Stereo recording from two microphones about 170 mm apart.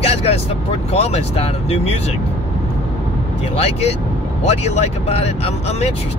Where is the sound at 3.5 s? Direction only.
35° left (ahead or behind).